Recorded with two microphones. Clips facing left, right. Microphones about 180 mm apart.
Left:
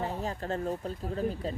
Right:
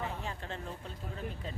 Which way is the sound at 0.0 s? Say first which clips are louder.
Left 6 dB; 40° left (ahead or behind).